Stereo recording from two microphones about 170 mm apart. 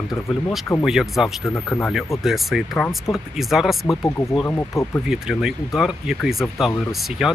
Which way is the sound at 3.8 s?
20° left (ahead or behind).